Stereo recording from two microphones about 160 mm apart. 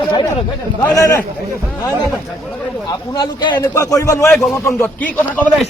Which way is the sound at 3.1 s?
25° left (ahead or behind).